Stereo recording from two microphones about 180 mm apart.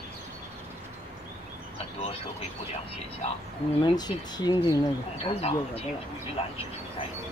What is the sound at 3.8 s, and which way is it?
Speech, 20° left (ahead or behind).